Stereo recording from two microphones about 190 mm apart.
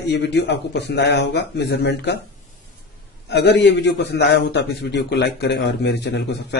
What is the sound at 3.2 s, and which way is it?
A man's voice, 65° left (ahead or behind).